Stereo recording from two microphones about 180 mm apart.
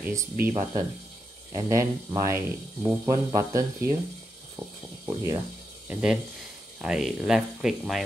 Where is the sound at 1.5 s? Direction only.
20° right (ahead or behind).